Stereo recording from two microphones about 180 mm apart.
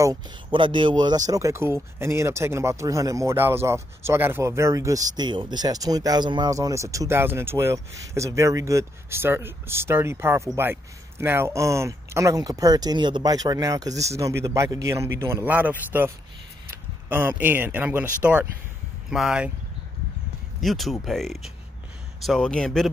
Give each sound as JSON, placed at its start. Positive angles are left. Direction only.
{"t": 0.0, "sound": "speech", "side_deg": -25}
{"t": 17.1, "sound": "speech", "side_deg": -10}
{"t": 20.6, "sound": "speech", "side_deg": 0}